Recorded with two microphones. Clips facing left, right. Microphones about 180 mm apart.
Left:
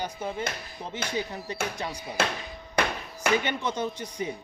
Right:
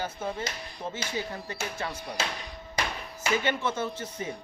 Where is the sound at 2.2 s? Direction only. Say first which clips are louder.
Left 6 dB; 60° left (ahead or behind).